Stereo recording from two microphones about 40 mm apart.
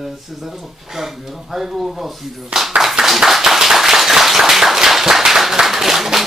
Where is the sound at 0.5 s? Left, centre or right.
Centre.